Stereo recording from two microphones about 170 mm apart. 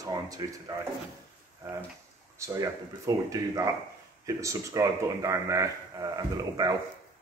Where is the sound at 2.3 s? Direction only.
15° right (ahead or behind).